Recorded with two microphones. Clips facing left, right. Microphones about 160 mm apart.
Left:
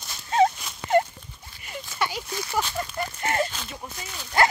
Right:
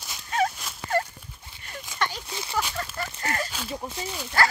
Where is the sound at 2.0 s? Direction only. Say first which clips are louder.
Left 2 dB; 10° left (ahead or behind).